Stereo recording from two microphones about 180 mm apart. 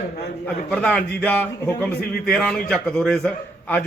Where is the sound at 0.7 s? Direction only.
5° left (ahead or behind).